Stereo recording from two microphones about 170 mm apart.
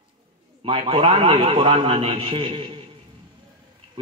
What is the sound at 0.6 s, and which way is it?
A man's voice, 35° right (ahead or behind).